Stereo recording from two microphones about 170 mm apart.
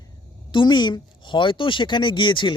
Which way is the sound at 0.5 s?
25° left (ahead or behind).